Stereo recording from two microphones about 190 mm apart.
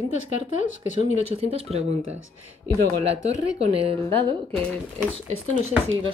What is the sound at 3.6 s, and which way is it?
Speech, 30° right (ahead or behind).